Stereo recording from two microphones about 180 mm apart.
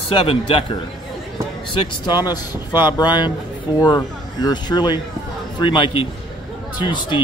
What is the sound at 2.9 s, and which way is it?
Speech, 25° left (ahead or behind).